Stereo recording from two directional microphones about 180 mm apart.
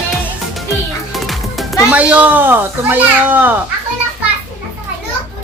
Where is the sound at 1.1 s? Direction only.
Centre (ahead or behind).